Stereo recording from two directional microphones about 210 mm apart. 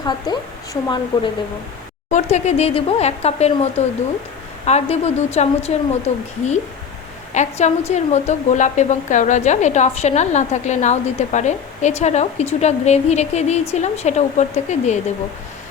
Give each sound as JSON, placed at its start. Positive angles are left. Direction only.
{"t": 0.0, "sound": "speech", "side_deg": 20}
{"t": 2.0, "sound": "a woman's voice", "side_deg": 35}
{"t": 7.3, "sound": "a woman's voice", "side_deg": 35}